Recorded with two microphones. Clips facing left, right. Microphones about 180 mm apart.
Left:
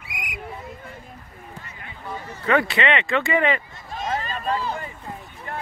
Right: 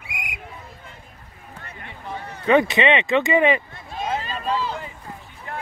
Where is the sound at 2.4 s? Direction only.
20° right (ahead or behind).